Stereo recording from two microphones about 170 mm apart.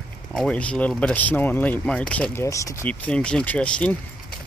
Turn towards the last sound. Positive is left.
turn(degrees=5)  # may be behind; listen again after turning